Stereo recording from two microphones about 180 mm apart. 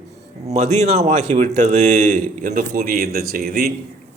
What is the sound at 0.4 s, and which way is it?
Speech, 40° right (ahead or behind).